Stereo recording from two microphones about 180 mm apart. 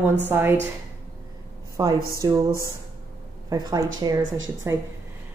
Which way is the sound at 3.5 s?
20° right (ahead or behind).